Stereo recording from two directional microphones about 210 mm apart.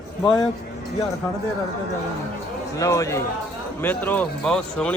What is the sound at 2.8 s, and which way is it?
A man's voice, 15° left (ahead or behind).